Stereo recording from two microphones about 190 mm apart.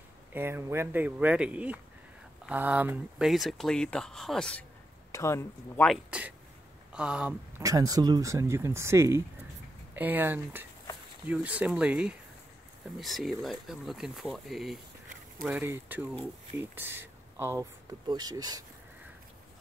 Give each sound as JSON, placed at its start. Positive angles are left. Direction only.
{"t": 0.3, "sound": "speech", "side_deg": -10}
{"t": 5.1, "sound": "speech", "side_deg": 15}
{"t": 5.9, "sound": "speech", "side_deg": -5}
{"t": 7.6, "sound": "speech", "side_deg": -20}